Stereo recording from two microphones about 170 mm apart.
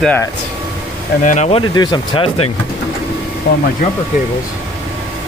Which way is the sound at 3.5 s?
70° left (ahead or behind).